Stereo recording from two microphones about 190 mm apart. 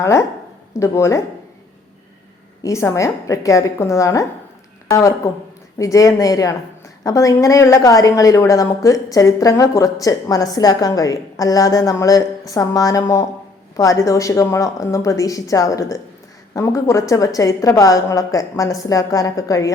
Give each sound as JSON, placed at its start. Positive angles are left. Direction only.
{"t": 0.0, "sound": "a woman's voice", "side_deg": 15}
{"t": 2.6, "sound": "a woman's voice", "side_deg": 15}